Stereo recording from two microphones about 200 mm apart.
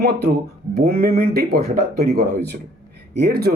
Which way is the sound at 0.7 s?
50° right (ahead or behind).